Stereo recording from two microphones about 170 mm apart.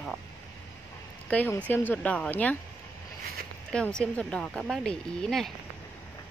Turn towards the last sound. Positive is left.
turn(degrees=0)  # may be behind; listen again after turning